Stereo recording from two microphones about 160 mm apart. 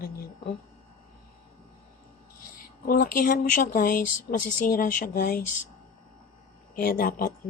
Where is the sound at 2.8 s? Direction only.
65° left (ahead or behind).